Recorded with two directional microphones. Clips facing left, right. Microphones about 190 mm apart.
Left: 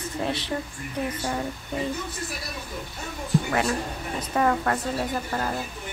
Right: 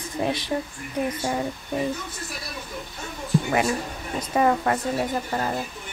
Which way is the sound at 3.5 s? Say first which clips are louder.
Right 2 dB; 15° right (ahead or behind).